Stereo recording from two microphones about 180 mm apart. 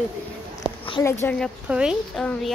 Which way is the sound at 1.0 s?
15° left (ahead or behind).